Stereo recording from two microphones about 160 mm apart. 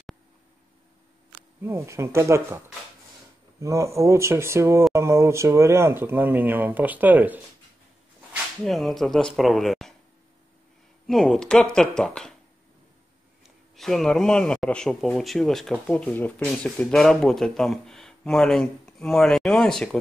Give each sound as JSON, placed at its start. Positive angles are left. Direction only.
{"t": 1.6, "sound": "speech", "side_deg": -15}
{"t": 8.6, "sound": "a man's voice", "side_deg": 0}
{"t": 11.1, "sound": "a man's voice", "side_deg": 0}
{"t": 13.4, "sound": "a man's voice", "side_deg": 0}